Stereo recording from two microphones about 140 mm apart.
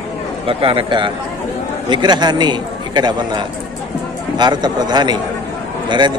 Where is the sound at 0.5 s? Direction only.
40° right (ahead or behind).